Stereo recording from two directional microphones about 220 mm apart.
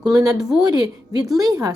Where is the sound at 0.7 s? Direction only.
15° right (ahead or behind).